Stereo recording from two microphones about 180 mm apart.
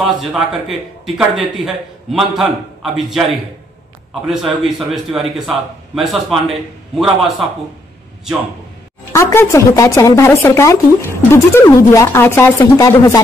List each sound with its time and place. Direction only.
0.2 s a man's voice: centre (ahead or behind)
9.1 s a woman's voice: 15° left (ahead or behind)